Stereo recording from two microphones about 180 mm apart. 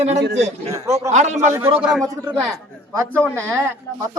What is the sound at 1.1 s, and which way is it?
Speech, 40° right (ahead or behind).